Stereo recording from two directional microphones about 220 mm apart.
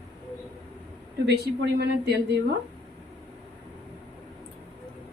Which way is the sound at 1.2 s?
50° right (ahead or behind).